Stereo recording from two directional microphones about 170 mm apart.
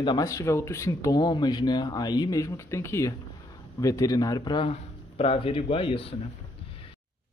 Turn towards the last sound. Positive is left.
turn(degrees=30)  # may be behind; listen again after turning